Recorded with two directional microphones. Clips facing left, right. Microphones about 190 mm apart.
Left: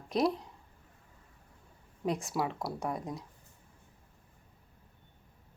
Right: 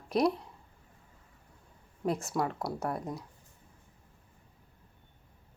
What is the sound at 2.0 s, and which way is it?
Speech, centre (ahead or behind).